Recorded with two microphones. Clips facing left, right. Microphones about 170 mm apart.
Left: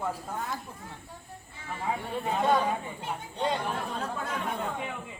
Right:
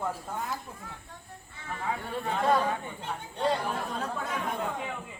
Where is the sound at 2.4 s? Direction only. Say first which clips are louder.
Even; centre (ahead or behind).